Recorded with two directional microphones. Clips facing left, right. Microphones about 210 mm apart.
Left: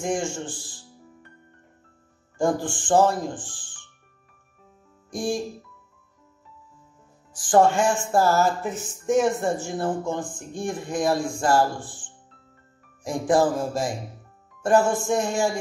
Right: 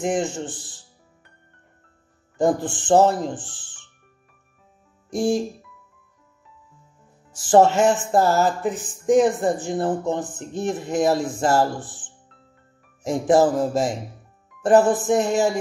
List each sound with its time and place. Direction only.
0.0 s speech: 20° right (ahead or behind)
2.3 s speech: 20° right (ahead or behind)
5.1 s speech: 25° right (ahead or behind)
7.3 s speech: 25° right (ahead or behind)